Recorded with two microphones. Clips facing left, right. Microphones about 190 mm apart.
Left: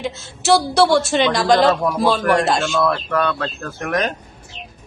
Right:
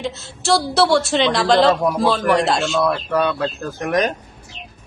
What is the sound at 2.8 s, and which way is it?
Speech, 10° right (ahead or behind).